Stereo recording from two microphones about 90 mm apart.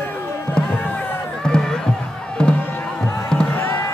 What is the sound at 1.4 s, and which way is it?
Music, 5° left (ahead or behind).